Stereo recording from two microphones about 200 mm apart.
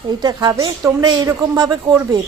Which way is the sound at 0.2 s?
20° right (ahead or behind).